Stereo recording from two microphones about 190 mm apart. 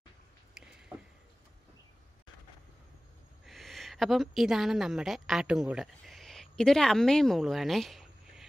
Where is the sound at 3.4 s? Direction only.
Centre (ahead or behind).